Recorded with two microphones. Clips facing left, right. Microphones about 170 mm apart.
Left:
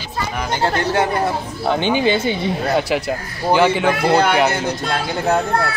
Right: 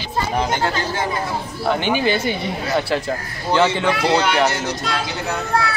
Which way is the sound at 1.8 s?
20° left (ahead or behind).